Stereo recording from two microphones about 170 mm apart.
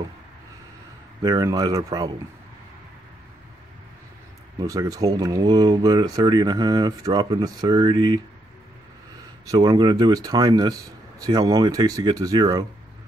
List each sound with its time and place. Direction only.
1.2 s speech: 20° right (ahead or behind)
4.6 s speech: 20° right (ahead or behind)
9.5 s speech: 25° right (ahead or behind)